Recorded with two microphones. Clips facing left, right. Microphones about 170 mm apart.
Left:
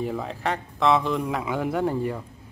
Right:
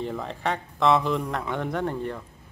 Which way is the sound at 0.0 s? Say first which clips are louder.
Left 1 dB; 5° left (ahead or behind).